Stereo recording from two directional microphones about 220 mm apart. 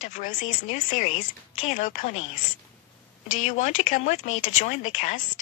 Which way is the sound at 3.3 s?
35° left (ahead or behind).